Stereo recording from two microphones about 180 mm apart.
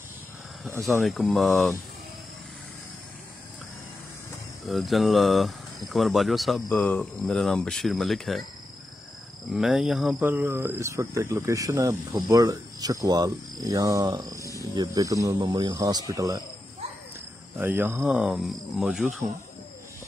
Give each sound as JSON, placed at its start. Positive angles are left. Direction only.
{"t": 1.0, "sound": "speech", "side_deg": 0}
{"t": 4.6, "sound": "speech", "side_deg": 0}
{"t": 9.5, "sound": "speech", "side_deg": 0}
{"t": 17.6, "sound": "speech", "side_deg": -15}